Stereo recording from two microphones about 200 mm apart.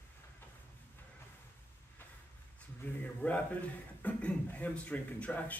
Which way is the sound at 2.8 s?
10° left (ahead or behind).